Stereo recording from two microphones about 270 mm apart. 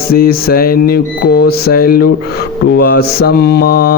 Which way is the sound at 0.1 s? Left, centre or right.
Left.